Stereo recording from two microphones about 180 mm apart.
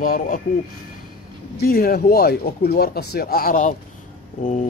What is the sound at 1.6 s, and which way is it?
Speech, 55° left (ahead or behind).